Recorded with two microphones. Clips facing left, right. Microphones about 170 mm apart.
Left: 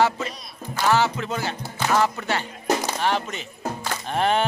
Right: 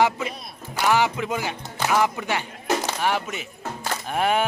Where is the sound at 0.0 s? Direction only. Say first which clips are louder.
Even; 15° right (ahead or behind).